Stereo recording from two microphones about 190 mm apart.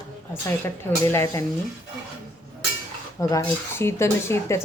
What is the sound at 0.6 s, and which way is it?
Speech, 15° left (ahead or behind).